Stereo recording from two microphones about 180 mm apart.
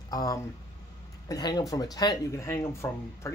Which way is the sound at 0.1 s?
20° left (ahead or behind).